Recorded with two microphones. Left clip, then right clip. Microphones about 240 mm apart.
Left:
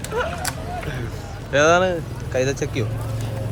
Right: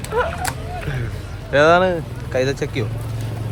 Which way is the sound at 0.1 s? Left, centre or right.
Centre.